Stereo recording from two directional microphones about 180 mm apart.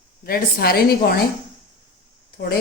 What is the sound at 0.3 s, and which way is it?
Speech, 55° left (ahead or behind).